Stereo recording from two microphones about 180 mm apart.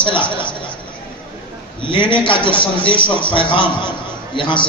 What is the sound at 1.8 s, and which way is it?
A man's voice, 25° left (ahead or behind).